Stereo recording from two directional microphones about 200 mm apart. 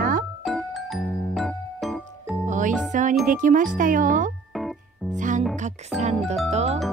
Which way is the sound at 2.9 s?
40° right (ahead or behind).